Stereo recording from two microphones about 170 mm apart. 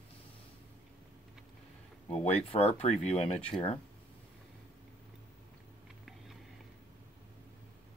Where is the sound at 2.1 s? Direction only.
35° left (ahead or behind).